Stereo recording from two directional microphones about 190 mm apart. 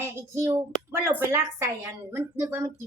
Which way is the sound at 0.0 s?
15° right (ahead or behind).